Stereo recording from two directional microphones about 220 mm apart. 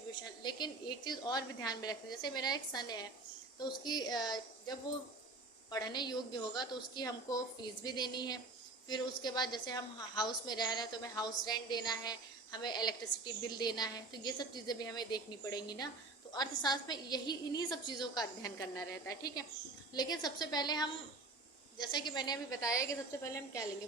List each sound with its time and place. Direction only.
0.4 s a woman's voice: 20° left (ahead or behind)